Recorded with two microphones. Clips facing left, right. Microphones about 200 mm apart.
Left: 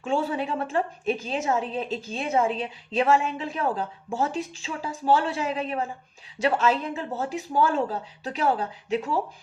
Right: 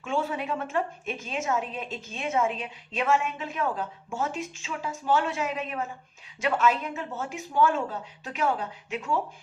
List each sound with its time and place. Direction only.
0.0 s a woman's voice: 35° left (ahead or behind)